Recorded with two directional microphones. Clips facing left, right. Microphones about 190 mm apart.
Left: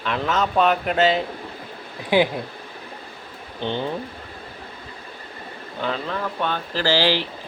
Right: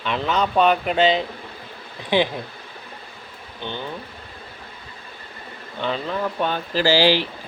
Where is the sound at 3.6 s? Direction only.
30° left (ahead or behind).